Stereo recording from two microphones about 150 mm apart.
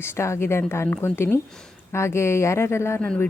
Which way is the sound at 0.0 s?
15° left (ahead or behind).